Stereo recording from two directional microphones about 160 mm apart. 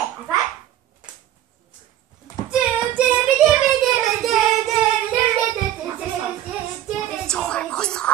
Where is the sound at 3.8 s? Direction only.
Centre (ahead or behind).